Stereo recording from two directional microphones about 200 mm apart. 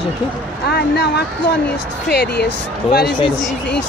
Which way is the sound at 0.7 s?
55° left (ahead or behind).